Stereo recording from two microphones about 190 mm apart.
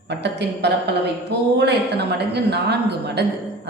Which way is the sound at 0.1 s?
65° right (ahead or behind).